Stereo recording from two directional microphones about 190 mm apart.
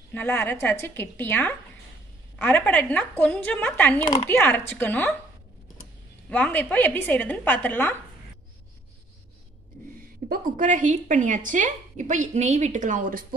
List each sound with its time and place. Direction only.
0.1 s a woman's voice: 10° left (ahead or behind)
6.2 s a woman's voice: 5° left (ahead or behind)
10.2 s a woman's voice: 45° right (ahead or behind)